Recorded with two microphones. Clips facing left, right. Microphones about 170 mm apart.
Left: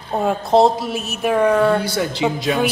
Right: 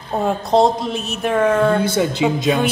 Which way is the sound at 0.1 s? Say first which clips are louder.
Left 1 dB; centre (ahead or behind).